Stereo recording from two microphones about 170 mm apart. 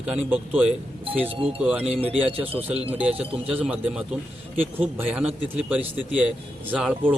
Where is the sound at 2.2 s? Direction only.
35° right (ahead or behind).